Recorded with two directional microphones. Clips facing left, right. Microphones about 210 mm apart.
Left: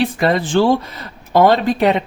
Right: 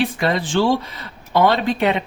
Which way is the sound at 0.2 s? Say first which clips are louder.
Left 4 dB; 45° left (ahead or behind).